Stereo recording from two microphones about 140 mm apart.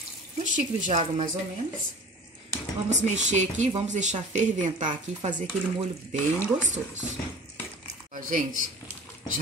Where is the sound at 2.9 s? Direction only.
55° right (ahead or behind).